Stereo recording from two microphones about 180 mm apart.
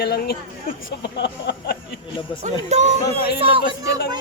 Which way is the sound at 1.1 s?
70° left (ahead or behind).